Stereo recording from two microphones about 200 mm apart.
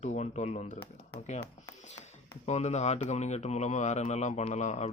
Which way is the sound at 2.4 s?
35° left (ahead or behind).